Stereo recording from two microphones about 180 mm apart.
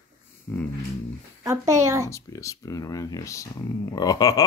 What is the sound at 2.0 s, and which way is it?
Speech, 15° left (ahead or behind).